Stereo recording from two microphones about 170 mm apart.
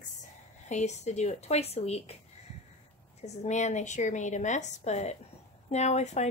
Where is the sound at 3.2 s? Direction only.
40° left (ahead or behind).